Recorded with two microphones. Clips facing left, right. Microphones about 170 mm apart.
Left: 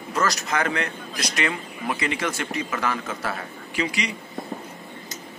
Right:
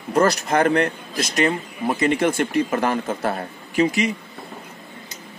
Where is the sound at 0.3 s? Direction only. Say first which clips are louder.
Right 7 dB; 55° right (ahead or behind).